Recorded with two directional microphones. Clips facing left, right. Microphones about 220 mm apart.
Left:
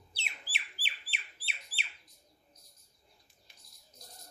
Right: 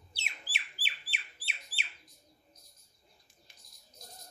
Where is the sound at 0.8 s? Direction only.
45° right (ahead or behind).